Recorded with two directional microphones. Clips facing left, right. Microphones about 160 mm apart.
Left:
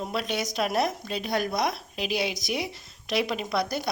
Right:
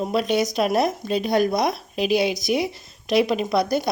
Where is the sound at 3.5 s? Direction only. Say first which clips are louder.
Right 6 dB; 15° right (ahead or behind).